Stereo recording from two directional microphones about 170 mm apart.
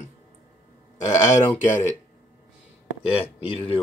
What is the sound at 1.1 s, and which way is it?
Speech, 20° left (ahead or behind).